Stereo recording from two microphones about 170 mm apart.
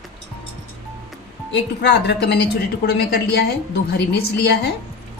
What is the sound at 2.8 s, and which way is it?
Speech, 70° left (ahead or behind).